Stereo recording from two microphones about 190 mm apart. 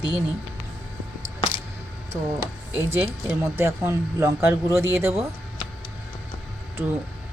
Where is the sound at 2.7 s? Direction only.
10° right (ahead or behind).